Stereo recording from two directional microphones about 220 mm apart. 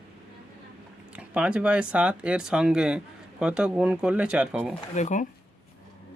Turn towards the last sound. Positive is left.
turn(degrees=35)  # may be behind; listen again after turning